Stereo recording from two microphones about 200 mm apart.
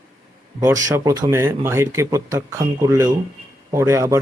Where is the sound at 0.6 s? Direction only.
15° right (ahead or behind).